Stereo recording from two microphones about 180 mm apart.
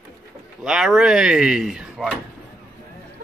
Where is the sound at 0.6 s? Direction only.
5° right (ahead or behind).